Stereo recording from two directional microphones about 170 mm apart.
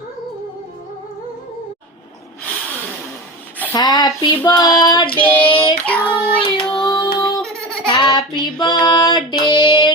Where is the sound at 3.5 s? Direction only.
10° left (ahead or behind).